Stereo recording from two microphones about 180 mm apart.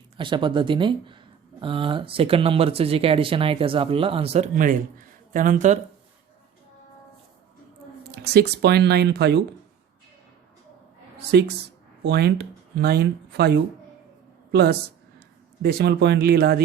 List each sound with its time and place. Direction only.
0.2 s speech: 25° right (ahead or behind); by 5.8 s 40° right (ahead or behind)
8.1 s speech: 60° right (ahead or behind)
11.2 s speech: 65° right (ahead or behind)